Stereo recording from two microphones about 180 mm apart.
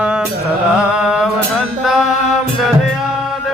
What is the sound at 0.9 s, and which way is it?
Mantra, 5° right (ahead or behind).